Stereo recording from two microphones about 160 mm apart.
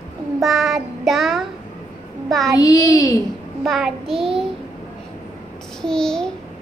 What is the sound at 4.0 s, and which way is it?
Child singing, 35° right (ahead or behind).